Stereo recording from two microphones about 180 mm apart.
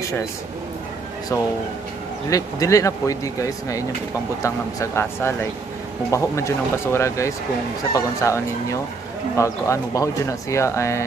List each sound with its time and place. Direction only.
2.2 s speech: 20° left (ahead or behind)